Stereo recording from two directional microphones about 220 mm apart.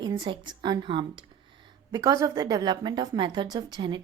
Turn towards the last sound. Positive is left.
turn(degrees=-20)  # may be behind; listen again after turning